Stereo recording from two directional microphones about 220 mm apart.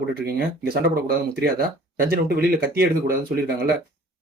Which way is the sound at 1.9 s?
45° right (ahead or behind).